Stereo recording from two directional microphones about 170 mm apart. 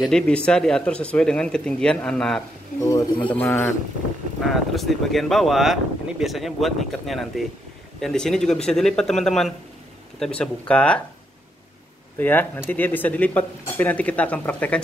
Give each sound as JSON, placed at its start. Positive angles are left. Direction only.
{"t": 0.0, "sound": "speech", "side_deg": 5}
{"t": 2.8, "sound": "speech", "side_deg": 20}
{"t": 4.5, "sound": "speech", "side_deg": 0}
{"t": 12.2, "sound": "speech", "side_deg": 10}